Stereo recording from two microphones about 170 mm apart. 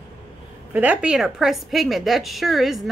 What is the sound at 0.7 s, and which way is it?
A woman's voice, 5° right (ahead or behind).